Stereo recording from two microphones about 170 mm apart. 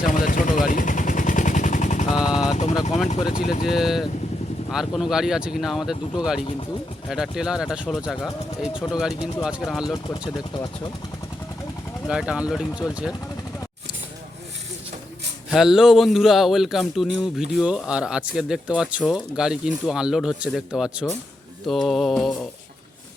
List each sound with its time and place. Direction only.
0.0 s gunshot: 50° left (ahead or behind)
2.1 s vehicle: 5° right (ahead or behind)
3.7 s speech: centre (ahead or behind)
9.8 s speech: 25° left (ahead or behind)
12.0 s speech: 5° right (ahead or behind)
15.4 s speech: 5° right (ahead or behind)